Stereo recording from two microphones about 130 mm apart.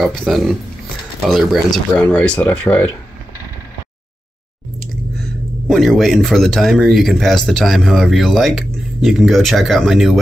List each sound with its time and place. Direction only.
0.0 s speech: centre (ahead or behind)
2.0 s speech: 10° left (ahead or behind)
5.7 s speech: centre (ahead or behind)